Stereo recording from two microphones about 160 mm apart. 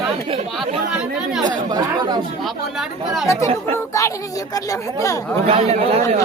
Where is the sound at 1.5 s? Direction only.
25° right (ahead or behind).